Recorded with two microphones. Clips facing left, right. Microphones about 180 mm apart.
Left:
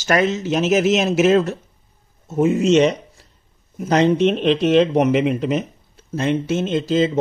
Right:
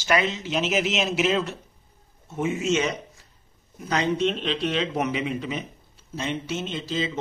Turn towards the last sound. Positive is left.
turn(degrees=50)  # may be behind; listen again after turning